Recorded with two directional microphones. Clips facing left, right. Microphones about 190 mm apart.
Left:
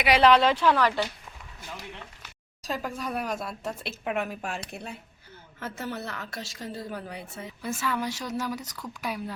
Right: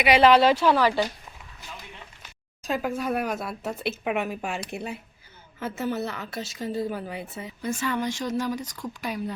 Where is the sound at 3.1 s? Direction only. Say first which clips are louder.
Right 3 dB; 55° right (ahead or behind).